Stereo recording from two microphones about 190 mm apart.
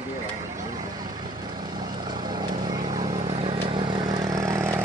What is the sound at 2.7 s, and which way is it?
Vehicle, 20° right (ahead or behind).